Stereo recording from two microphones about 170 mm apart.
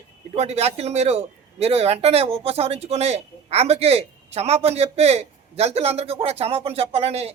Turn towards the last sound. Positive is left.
turn(degrees=-35)  # may be behind; listen again after turning